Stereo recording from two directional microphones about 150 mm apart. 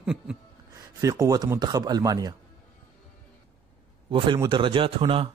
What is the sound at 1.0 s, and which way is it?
Speech, 25° right (ahead or behind).